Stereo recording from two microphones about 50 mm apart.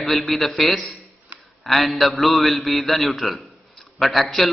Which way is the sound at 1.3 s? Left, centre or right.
Right.